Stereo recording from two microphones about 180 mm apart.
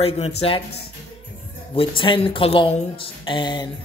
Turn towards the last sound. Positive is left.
turn(degrees=25)  # may be behind; listen again after turning